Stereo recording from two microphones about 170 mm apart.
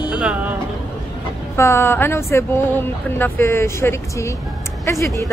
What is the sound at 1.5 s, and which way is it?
Speech, 15° left (ahead or behind).